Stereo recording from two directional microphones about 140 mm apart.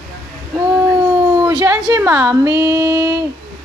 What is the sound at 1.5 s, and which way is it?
A woman's voice, 25° right (ahead or behind).